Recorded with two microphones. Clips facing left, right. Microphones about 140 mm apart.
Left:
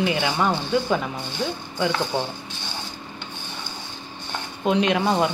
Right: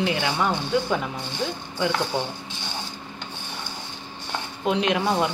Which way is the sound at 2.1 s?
10° right (ahead or behind).